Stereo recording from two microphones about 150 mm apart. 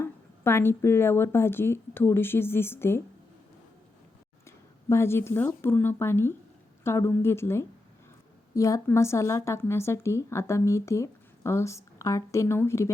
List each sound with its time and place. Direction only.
0.0 s a woman's voice: 15° left (ahead or behind)
4.4 s a woman's voice: 20° left (ahead or behind)